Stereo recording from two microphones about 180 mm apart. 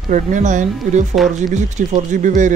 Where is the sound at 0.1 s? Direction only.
45° right (ahead or behind).